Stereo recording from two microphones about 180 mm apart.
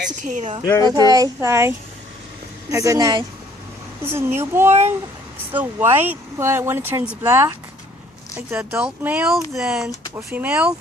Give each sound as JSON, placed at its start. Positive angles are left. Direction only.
{"t": 0.0, "sound": "speech", "side_deg": -45}
{"t": 1.1, "sound": "speech", "side_deg": -20}
{"t": 4.7, "sound": "speech", "side_deg": -40}
{"t": 5.5, "sound": "speech", "side_deg": -10}